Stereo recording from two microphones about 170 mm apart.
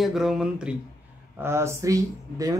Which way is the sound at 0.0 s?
Centre (ahead or behind).